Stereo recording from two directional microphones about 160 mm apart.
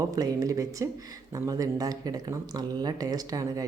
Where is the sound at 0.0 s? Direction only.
20° right (ahead or behind).